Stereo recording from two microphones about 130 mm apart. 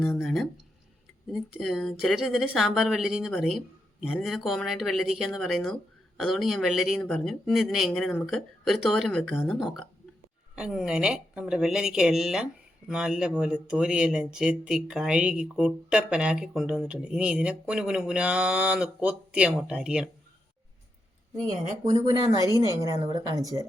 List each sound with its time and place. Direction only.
0.2 s speech: centre (ahead or behind)
21.5 s speech: 65° right (ahead or behind)
22.4 s speech: 25° right (ahead or behind)